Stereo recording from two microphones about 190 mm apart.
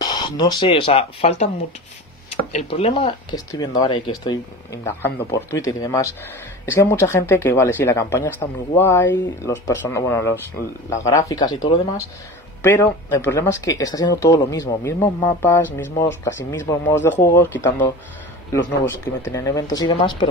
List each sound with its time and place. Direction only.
0.0 s speech: 20° left (ahead or behind)
2.5 s speech: 30° left (ahead or behind); by 17.8 s 10° left (ahead or behind)
19.2 s speech: 15° left (ahead or behind)